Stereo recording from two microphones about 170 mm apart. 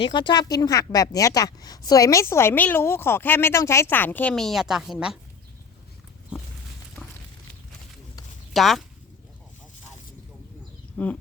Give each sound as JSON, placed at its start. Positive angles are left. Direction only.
{"t": 0.0, "sound": "a woman's voice", "side_deg": 25}
{"t": 8.5, "sound": "speech", "side_deg": 0}
{"t": 10.9, "sound": "speech", "side_deg": 10}